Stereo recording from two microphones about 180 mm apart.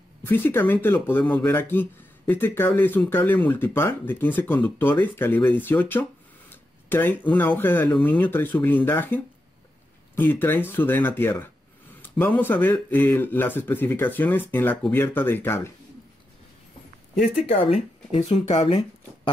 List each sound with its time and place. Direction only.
0.2 s speech: 10° left (ahead or behind)
17.5 s speech: 35° left (ahead or behind)